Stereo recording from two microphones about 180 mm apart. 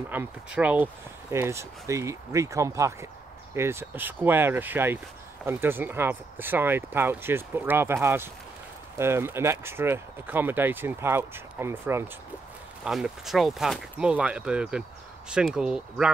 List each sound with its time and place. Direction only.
0.1 s speech: 10° right (ahead or behind)
12.8 s speech: 5° right (ahead or behind)